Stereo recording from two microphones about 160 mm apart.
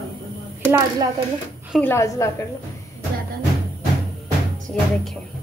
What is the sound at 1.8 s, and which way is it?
Speech, 15° left (ahead or behind).